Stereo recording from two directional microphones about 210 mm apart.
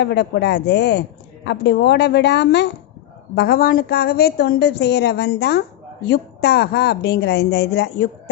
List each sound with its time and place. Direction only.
0.0 s a woman's voice: 55° left (ahead or behind)